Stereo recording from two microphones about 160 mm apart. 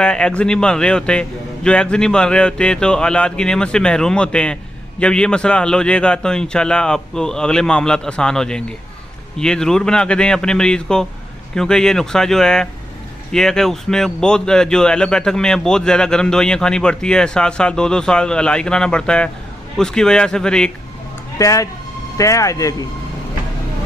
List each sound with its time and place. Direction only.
0.0 s speech: 5° left (ahead or behind)
21.4 s speech: 20° left (ahead or behind)